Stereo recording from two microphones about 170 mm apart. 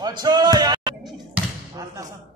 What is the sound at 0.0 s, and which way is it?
Speech, 25° right (ahead or behind).